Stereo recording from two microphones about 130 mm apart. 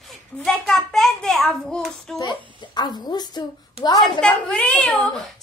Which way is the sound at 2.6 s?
35° left (ahead or behind).